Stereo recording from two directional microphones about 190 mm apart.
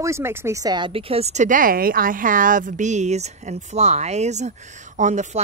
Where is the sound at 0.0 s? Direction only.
15° right (ahead or behind).